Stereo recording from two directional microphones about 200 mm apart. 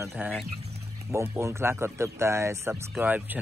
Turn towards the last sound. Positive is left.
turn(degrees=-10)  # may be behind; listen again after turning